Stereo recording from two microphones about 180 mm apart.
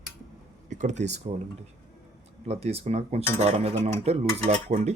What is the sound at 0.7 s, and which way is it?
Speech, 40° right (ahead or behind).